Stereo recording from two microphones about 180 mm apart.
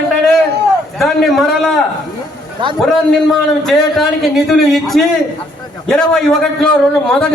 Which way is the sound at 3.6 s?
Centre (ahead or behind).